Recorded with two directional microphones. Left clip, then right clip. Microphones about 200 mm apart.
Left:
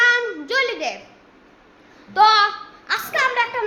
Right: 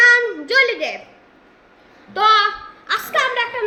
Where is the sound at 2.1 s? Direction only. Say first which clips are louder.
Even; 5° left (ahead or behind).